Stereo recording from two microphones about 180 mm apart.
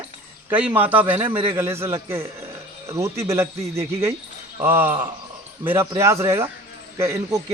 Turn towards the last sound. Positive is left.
turn(degrees=-15)  # may be behind; listen again after turning